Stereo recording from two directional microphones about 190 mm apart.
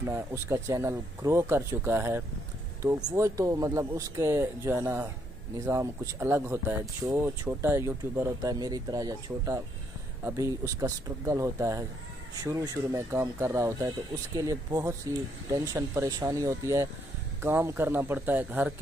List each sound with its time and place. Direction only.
0.0 s speech: 15° right (ahead or behind)